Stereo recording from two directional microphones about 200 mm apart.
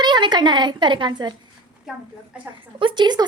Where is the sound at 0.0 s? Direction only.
20° right (ahead or behind).